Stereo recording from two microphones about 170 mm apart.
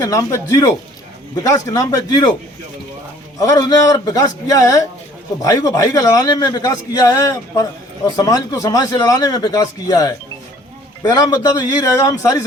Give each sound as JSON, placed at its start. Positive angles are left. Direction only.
{"t": 0.0, "sound": "a man's voice", "side_deg": 20}
{"t": 3.3, "sound": "a man's voice", "side_deg": 20}